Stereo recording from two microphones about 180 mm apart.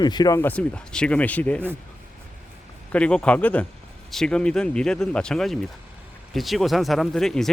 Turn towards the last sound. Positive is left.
turn(degrees=0)  # may be behind; listen again after turning